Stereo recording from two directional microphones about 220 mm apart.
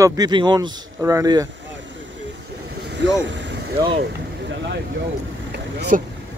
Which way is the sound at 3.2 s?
55° right (ahead or behind).